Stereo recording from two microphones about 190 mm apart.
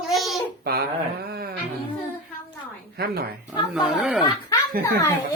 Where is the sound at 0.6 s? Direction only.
55° right (ahead or behind).